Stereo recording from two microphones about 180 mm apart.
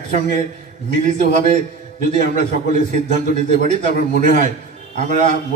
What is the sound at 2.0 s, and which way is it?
A man's voice, 40° right (ahead or behind).